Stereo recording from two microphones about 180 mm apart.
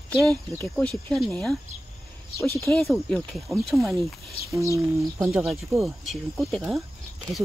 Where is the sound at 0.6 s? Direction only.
5° left (ahead or behind).